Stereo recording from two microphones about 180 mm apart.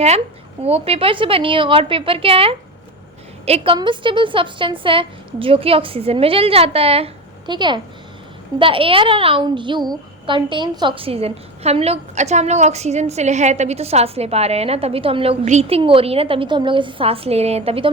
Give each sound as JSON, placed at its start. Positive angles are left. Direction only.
{"t": 0.6, "sound": "a child's voice", "side_deg": -35}